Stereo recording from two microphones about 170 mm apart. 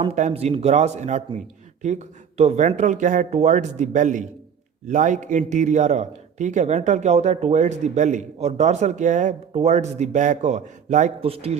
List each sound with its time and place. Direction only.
0.0 s a man's voice: 40° right (ahead or behind)